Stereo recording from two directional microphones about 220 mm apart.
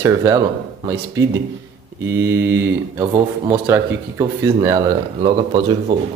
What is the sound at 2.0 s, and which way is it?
Speech, 15° right (ahead or behind).